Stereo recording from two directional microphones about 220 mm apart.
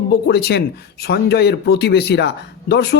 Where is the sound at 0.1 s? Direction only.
45° left (ahead or behind).